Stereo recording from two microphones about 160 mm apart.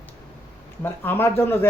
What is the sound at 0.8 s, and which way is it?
Speech, 15° left (ahead or behind).